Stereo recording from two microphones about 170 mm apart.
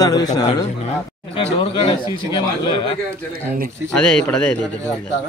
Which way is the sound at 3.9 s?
5° left (ahead or behind).